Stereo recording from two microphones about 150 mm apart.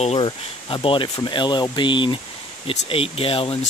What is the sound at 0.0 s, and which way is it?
Speech, 40° left (ahead or behind).